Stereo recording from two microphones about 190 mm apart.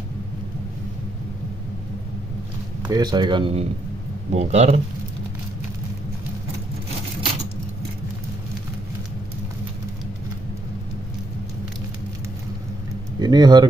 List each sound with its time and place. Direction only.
2.9 s speech: 20° right (ahead or behind)
13.2 s speech: 20° right (ahead or behind)